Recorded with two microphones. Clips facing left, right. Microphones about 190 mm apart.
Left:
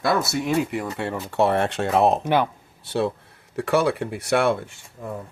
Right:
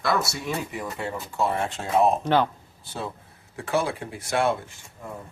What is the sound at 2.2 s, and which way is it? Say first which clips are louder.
Speech: left 1 dB; 15° left (ahead or behind).